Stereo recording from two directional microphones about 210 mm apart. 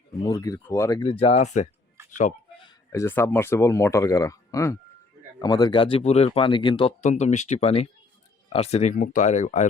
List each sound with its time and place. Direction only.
0.2 s speech: 15° left (ahead or behind); by 2.3 s 35° left (ahead or behind)
2.6 s speech: 15° left (ahead or behind)
7.0 s speech: 35° left (ahead or behind)